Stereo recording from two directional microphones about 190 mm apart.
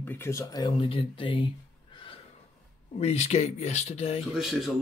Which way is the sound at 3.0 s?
35° left (ahead or behind).